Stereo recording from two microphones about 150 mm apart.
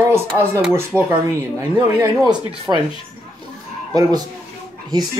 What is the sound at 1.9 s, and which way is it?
Speech, 25° right (ahead or behind).